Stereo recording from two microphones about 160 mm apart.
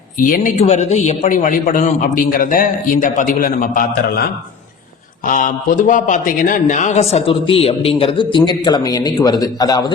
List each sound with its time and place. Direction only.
0.3 s a man's voice: 60° left (ahead or behind)
0.6 s a man's voice: 45° left (ahead or behind); by 9.9 s 25° left (ahead or behind)